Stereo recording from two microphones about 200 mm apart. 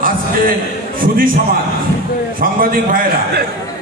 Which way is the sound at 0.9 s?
45° right (ahead or behind).